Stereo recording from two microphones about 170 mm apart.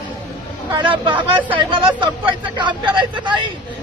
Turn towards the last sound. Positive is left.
turn(degrees=-30)  # may be behind; listen again after turning